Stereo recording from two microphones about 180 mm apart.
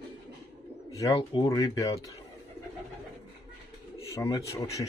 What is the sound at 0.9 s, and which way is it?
Speech, 20° left (ahead or behind).